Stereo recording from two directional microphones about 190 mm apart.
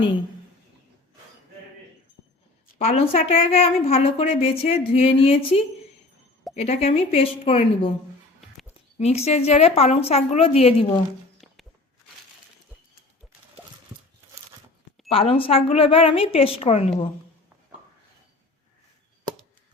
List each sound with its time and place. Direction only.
2.7 s a woman's voice: 35° left (ahead or behind)
9.0 s a woman's voice: 35° left (ahead or behind)
15.1 s a woman's voice: 30° left (ahead or behind)